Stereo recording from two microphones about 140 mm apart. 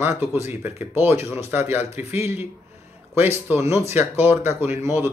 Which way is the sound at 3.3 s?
15° right (ahead or behind).